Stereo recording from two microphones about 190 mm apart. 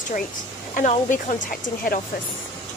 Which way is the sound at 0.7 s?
45° left (ahead or behind).